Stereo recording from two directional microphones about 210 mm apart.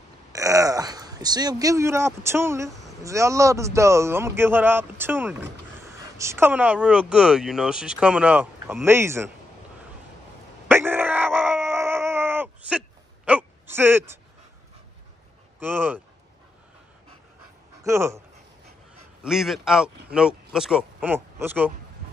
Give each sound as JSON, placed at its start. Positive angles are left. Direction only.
{"t": 0.3, "sound": "a man's voice", "side_deg": -15}
{"t": 10.7, "sound": "screaming", "side_deg": -10}
{"t": 15.6, "sound": "a man's voice", "side_deg": -10}
{"t": 17.8, "sound": "a man's voice", "side_deg": -15}
{"t": 19.2, "sound": "speech", "side_deg": 0}